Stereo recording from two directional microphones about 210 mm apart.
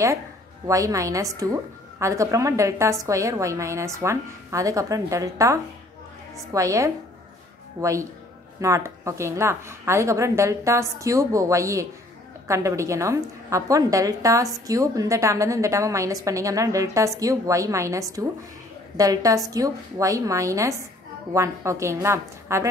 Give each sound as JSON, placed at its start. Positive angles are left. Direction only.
{"t": 0.7, "sound": "a woman's voice", "side_deg": -15}